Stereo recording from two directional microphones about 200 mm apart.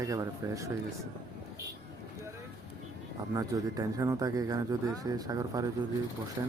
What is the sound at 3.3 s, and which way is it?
Speech, 15° right (ahead or behind).